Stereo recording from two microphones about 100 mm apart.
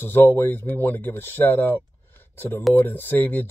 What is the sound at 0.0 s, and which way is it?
Speech, 20° left (ahead or behind).